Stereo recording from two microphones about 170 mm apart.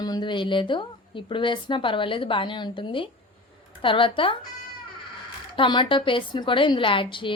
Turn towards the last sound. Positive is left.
turn(degrees=30)  # may be behind; listen again after turning